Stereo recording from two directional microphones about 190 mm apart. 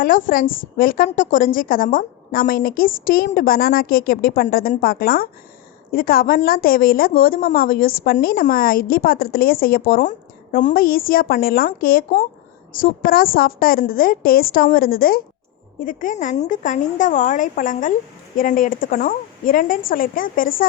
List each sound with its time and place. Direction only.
0.0 s a woman's voice: 45° left (ahead or behind)